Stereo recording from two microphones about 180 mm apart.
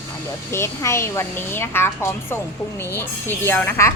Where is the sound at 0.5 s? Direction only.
15° left (ahead or behind).